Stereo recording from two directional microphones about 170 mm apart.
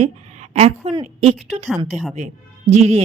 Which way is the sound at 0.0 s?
40° right (ahead or behind).